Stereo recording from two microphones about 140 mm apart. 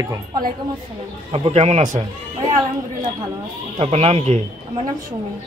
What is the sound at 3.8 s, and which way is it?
Speech, 45° right (ahead or behind).